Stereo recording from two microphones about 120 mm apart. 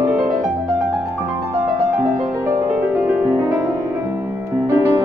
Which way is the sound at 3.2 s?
25° right (ahead or behind).